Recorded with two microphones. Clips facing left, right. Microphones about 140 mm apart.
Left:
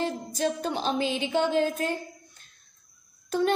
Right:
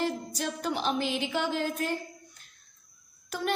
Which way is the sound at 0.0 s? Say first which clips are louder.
Left 3 dB; 25° left (ahead or behind).